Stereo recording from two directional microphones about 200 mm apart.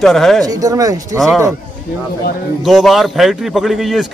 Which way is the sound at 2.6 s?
Centre (ahead or behind).